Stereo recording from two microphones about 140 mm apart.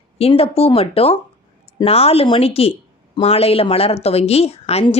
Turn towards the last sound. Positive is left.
turn(degrees=45)  # may be behind; listen again after turning